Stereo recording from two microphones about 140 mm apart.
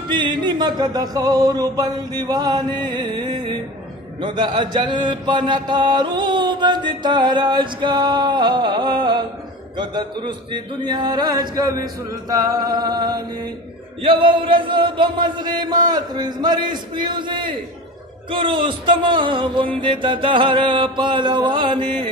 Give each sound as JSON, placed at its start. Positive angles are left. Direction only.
{"t": 0.1, "sound": "speech", "side_deg": -35}
{"t": 4.2, "sound": "mantra", "side_deg": -35}
{"t": 9.8, "sound": "speech", "side_deg": -30}
{"t": 14.0, "sound": "mantra", "side_deg": -40}